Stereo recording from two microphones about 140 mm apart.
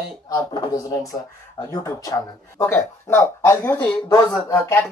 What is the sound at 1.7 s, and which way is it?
Speech, 30° left (ahead or behind).